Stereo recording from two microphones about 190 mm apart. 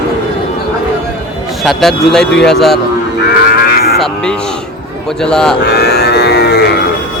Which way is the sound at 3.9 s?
Centre (ahead or behind).